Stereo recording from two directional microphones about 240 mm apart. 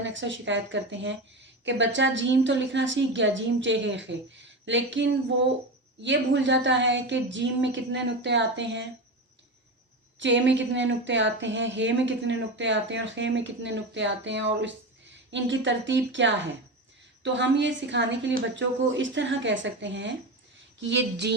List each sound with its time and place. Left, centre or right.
0.0 s speech: right
10.2 s speech: right